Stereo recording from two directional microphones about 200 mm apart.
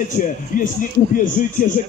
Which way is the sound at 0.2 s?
40° left (ahead or behind).